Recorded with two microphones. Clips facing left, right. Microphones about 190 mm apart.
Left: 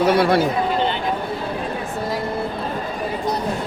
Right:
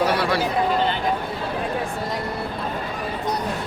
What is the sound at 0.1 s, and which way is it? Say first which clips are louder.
Speech: left 6 dB; 55° left (ahead or behind).